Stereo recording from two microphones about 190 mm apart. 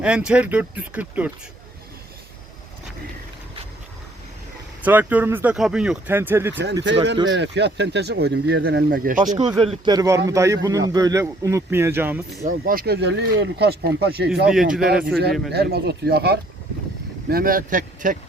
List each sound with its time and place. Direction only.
0.0 s a man's voice: 5° right (ahead or behind)
4.8 s a man's voice: 10° right (ahead or behind)
7.3 s speech: 65° right (ahead or behind); by 9.4 s 40° right (ahead or behind)
9.6 s a man's voice: 25° right (ahead or behind); by 12.5 s 10° right (ahead or behind)
12.5 s speech: 50° right (ahead or behind)
14.4 s speech: 5° right (ahead or behind)
15.5 s speech: 55° right (ahead or behind)